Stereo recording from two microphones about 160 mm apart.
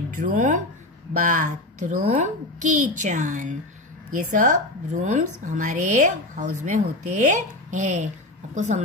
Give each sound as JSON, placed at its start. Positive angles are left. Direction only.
{"t": 0.1, "sound": "a woman's voice", "side_deg": -55}